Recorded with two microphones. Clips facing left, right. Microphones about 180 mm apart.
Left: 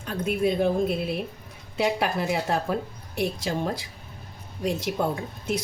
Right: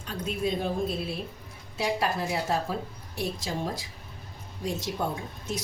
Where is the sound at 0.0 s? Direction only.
55° left (ahead or behind).